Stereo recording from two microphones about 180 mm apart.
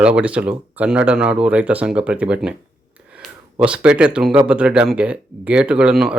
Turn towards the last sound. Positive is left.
turn(degrees=-5)  # may be behind; listen again after turning